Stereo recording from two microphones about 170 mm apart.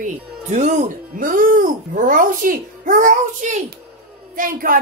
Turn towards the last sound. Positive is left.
turn(degrees=-55)  # may be behind; listen again after turning